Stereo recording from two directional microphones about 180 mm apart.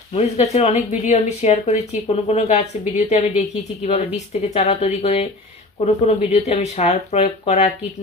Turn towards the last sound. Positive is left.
turn(degrees=35)  # may be behind; listen again after turning